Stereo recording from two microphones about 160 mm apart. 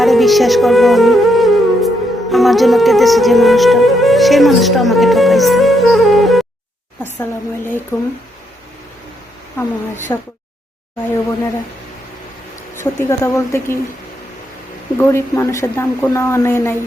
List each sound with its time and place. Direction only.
0.0 s speech: centre (ahead or behind)
2.3 s music: centre (ahead or behind)
7.0 s a woman's voice: 10° left (ahead or behind)
9.6 s a woman's voice: 15° left (ahead or behind)
12.7 s a woman's voice: 15° left (ahead or behind)
14.9 s a woman's voice: 15° left (ahead or behind)